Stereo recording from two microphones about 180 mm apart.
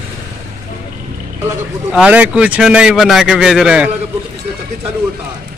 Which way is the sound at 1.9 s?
5° right (ahead or behind).